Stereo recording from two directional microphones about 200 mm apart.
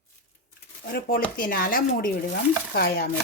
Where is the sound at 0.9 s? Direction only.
50° left (ahead or behind).